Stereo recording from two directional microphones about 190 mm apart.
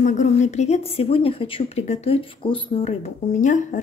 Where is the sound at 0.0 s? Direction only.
40° left (ahead or behind).